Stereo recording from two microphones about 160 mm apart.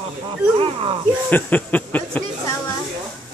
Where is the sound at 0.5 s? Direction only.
35° right (ahead or behind).